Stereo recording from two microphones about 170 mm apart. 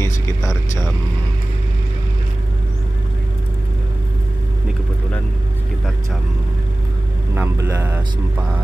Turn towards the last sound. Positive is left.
turn(degrees=-10)  # may be behind; listen again after turning